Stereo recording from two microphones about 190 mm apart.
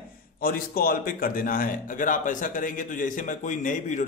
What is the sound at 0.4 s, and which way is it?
A man's voice, 50° left (ahead or behind).